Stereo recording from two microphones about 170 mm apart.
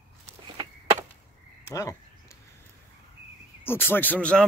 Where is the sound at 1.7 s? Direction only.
15° left (ahead or behind).